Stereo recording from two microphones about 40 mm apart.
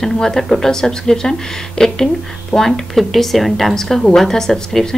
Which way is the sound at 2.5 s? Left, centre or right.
Centre.